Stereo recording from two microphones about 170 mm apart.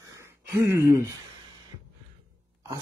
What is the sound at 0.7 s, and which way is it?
Speech, 15° right (ahead or behind).